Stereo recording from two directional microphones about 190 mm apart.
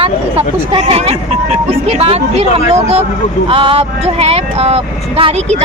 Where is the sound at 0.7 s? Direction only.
35° right (ahead or behind).